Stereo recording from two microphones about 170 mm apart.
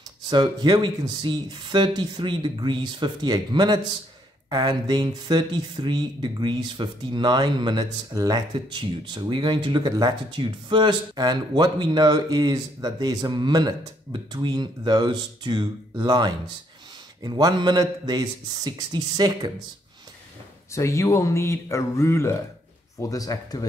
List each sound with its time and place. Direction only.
0.3 s speech: 25° right (ahead or behind)
20.7 s speech: 15° left (ahead or behind)